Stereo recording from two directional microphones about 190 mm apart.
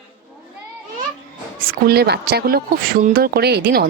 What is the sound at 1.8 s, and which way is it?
Speech, 55° right (ahead or behind).